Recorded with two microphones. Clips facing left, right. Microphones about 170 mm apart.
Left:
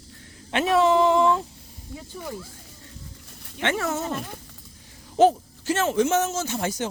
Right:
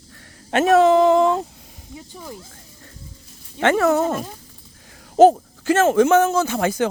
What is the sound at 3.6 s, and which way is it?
Speech, 65° right (ahead or behind).